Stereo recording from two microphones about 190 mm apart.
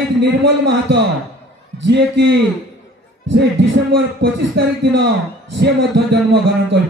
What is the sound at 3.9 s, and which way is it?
Speech, 65° right (ahead or behind).